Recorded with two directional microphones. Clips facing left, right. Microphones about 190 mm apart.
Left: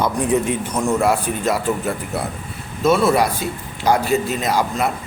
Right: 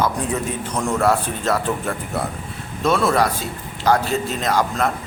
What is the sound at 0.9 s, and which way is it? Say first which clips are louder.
A man's voice: right 2 dB; 10° left (ahead or behind).